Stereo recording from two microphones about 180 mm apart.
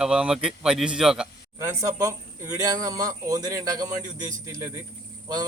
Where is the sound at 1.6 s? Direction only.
15° right (ahead or behind).